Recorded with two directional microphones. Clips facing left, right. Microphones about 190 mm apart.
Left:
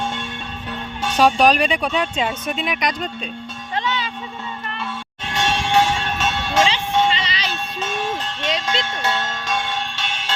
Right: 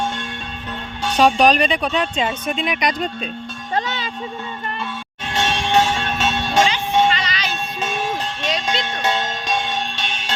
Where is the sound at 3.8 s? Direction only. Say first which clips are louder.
Even; 40° right (ahead or behind).